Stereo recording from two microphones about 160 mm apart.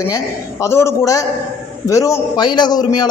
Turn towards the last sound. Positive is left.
turn(degrees=25)  # may be behind; listen again after turning